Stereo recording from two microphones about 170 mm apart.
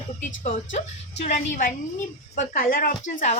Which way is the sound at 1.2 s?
45° left (ahead or behind).